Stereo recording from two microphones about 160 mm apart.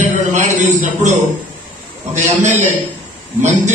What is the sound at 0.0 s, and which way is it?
A man's voice, 50° right (ahead or behind).